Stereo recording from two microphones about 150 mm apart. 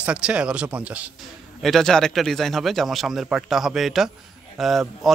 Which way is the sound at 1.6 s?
Centre (ahead or behind).